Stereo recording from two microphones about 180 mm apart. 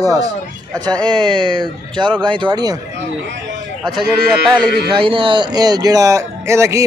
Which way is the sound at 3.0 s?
80° right.